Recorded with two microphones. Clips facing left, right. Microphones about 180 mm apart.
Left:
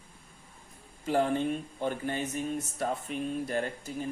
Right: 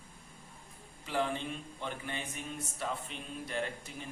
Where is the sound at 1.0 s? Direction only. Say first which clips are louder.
Left 7 dB; 45° left (ahead or behind).